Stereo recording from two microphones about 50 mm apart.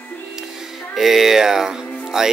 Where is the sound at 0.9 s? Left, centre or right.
Centre.